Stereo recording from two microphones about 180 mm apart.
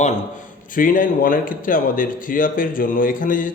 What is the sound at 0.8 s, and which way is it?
A man's voice, 50° left (ahead or behind).